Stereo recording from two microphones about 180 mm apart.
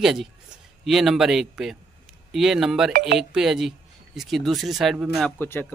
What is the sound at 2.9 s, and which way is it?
Speech, 50° right (ahead or behind).